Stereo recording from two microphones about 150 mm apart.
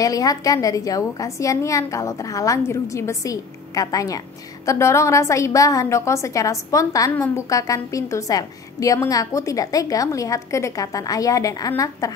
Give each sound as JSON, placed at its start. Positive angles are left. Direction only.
{"t": 0.0, "sound": "a woman's voice", "side_deg": 25}